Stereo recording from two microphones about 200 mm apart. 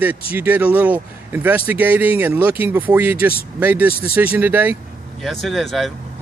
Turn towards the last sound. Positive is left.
turn(degrees=0)  # may be behind; listen again after turning